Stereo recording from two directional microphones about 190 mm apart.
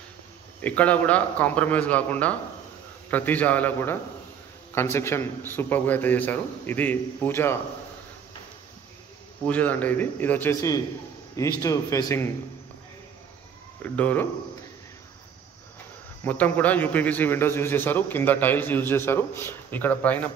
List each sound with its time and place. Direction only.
0.6 s a man's voice: 5° left (ahead or behind)
9.5 s a man's voice: 10° left (ahead or behind)
13.9 s a man's voice: 10° left (ahead or behind)
16.3 s a man's voice: 10° left (ahead or behind)